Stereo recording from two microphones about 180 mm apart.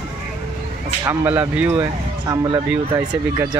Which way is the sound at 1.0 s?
10° right (ahead or behind).